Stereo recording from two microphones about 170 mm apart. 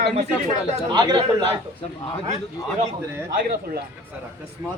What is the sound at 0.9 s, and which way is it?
Speech, 25° right (ahead or behind).